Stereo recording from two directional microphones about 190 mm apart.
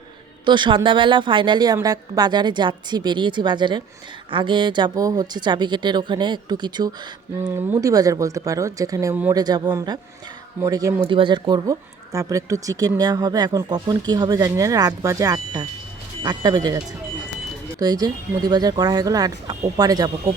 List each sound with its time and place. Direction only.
0.4 s speech: 25° right (ahead or behind)
11.1 s speech: 25° right (ahead or behind)